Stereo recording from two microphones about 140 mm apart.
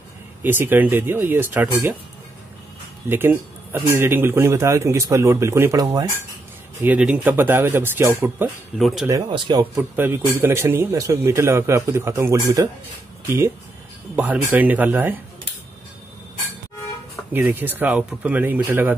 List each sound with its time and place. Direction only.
0.4 s speech: 15° right (ahead or behind)
3.1 s a man's voice: 15° right (ahead or behind)
6.8 s speech: 10° right (ahead or behind)
8.7 s speech: centre (ahead or behind)
9.3 s a man's voice: 30° right (ahead or behind)
9.9 s a man's voice: 15° right (ahead or behind)
14.1 s speech: 10° right (ahead or behind)
17.3 s speech: 15° right (ahead or behind)